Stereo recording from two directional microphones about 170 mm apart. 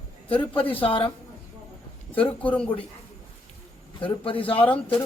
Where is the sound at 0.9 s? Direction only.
30° left (ahead or behind).